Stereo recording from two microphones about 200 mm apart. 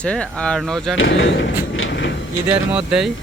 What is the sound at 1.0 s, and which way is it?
Speech, 70° left (ahead or behind).